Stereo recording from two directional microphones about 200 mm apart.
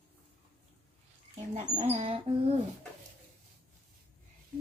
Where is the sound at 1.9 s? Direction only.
30° right (ahead or behind).